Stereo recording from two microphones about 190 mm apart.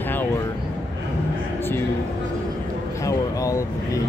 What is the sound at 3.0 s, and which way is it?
Speech, 15° left (ahead or behind).